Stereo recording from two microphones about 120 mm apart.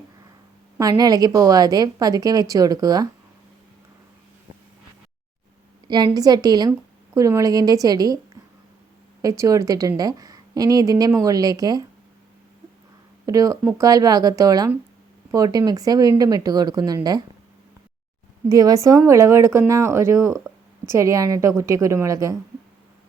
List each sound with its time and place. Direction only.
0.8 s a woman's voice: 30° right (ahead or behind)
6.1 s a woman's voice: 35° right (ahead or behind)
9.2 s a woman's voice: 25° right (ahead or behind)
13.2 s a woman's voice: 30° right (ahead or behind)
18.4 s speech: 30° right (ahead or behind)